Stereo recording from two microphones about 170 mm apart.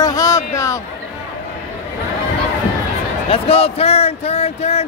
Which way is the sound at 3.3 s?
35° left (ahead or behind).